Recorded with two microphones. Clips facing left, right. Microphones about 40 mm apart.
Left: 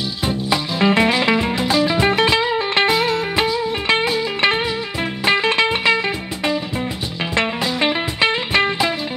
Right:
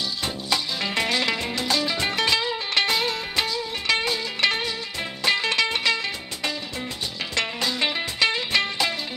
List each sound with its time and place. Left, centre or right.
0.2 s music: left
2.9 s music: centre